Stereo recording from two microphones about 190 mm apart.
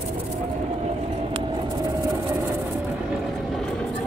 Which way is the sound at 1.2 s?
25° right (ahead or behind).